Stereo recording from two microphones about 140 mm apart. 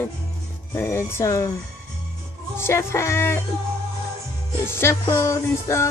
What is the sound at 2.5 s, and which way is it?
Music, 20° left (ahead or behind).